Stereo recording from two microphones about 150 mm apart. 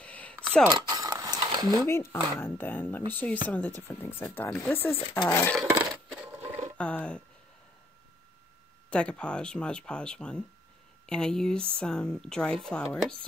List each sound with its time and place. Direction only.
0.0 s a sound: 10° left (ahead or behind)
0.7 s a sound: 25° right (ahead or behind)
1.9 s a woman's voice: 15° left (ahead or behind)
5.7 s coin: 10° right (ahead or behind)
6.8 s a woman's voice: 10° left (ahead or behind)
8.9 s a woman's voice: 5° left (ahead or behind)